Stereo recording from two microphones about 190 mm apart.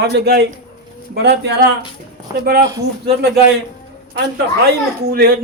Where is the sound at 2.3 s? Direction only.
20° right (ahead or behind).